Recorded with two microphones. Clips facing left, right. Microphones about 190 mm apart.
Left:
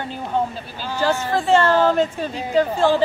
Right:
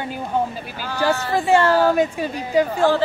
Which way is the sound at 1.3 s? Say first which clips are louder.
Even; 15° right (ahead or behind).